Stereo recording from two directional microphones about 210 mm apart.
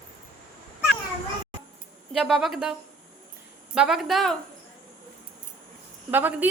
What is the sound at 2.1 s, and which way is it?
Speech, centre (ahead or behind).